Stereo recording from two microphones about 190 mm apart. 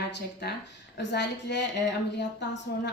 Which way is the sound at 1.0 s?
65° left (ahead or behind).